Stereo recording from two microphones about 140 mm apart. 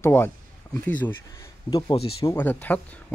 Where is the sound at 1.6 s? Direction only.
30° left (ahead or behind).